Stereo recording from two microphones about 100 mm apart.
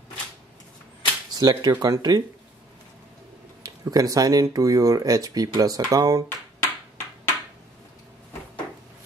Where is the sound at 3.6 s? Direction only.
40° right (ahead or behind).